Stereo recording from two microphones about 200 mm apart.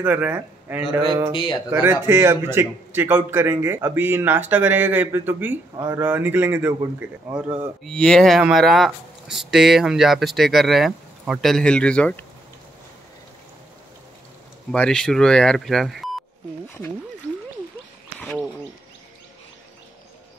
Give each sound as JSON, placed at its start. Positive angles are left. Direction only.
{"t": 0.0, "sound": "a man's voice", "side_deg": -10}
{"t": 1.0, "sound": "speech", "side_deg": -20}
{"t": 1.3, "sound": "speech", "side_deg": 25}
{"t": 1.7, "sound": "a man's voice", "side_deg": -10}
{"t": 7.8, "sound": "speech", "side_deg": 5}
{"t": 14.7, "sound": "speech", "side_deg": 5}